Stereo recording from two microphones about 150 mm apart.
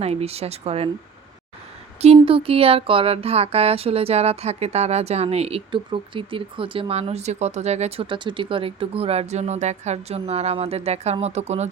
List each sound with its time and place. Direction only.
0.0 s speech: 45° right (ahead or behind)
2.2 s speech: 40° right (ahead or behind)